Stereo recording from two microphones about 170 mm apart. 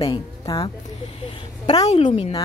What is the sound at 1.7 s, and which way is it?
Speech, 40° left (ahead or behind).